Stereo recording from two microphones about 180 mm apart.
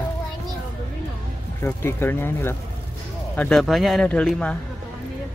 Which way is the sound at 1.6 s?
15° left (ahead or behind).